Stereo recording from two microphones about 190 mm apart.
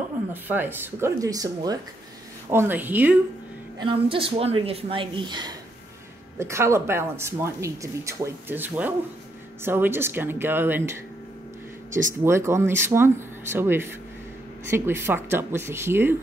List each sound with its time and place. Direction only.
0.3 s speech: 10° right (ahead or behind)
3.8 s speech: 25° right (ahead or behind); by 11.0 s 10° right (ahead or behind)
12.3 s speech: 15° right (ahead or behind)